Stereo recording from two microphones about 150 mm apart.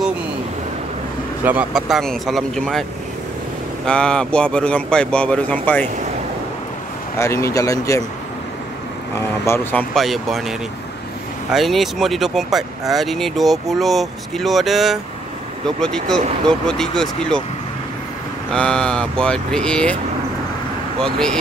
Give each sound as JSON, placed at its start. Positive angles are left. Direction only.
{"t": 1.4, "sound": "speech", "side_deg": -10}
{"t": 3.8, "sound": "speech", "side_deg": 5}
{"t": 7.2, "sound": "speech", "side_deg": 20}
{"t": 9.5, "sound": "speech", "side_deg": 10}
{"t": 9.9, "sound": "speech", "side_deg": 0}
{"t": 11.5, "sound": "speech", "side_deg": 0}
{"t": 18.5, "sound": "speech", "side_deg": 5}
{"t": 21.0, "sound": "speech", "side_deg": 5}